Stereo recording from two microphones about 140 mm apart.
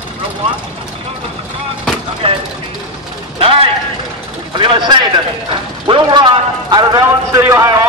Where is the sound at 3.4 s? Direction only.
45° right (ahead or behind).